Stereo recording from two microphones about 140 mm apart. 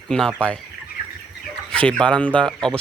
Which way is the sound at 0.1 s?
5° left (ahead or behind).